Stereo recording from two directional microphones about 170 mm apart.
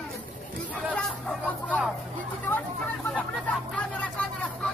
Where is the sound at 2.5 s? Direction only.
15° left (ahead or behind).